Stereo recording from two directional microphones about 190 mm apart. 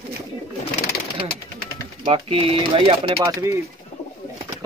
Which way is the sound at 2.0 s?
30° right (ahead or behind).